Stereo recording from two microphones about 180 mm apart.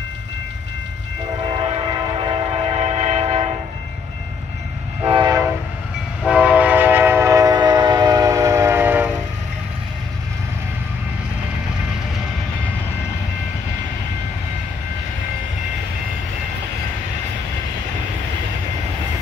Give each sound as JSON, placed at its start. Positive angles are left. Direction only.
{"t": 1.4, "sound": "train", "side_deg": -30}
{"t": 5.0, "sound": "train", "side_deg": -25}
{"t": 6.2, "sound": "train", "side_deg": -5}